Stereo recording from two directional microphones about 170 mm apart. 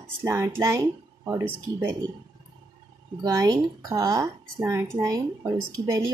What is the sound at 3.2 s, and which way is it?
Speech, 20° right (ahead or behind).